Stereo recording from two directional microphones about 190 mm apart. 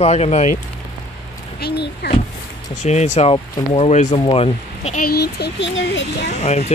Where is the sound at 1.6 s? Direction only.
55° left (ahead or behind).